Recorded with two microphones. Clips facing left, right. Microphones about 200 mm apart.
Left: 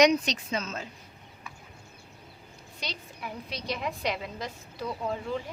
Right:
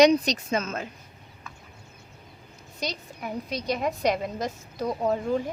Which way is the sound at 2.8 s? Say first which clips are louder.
Right 6 dB; 45° right (ahead or behind).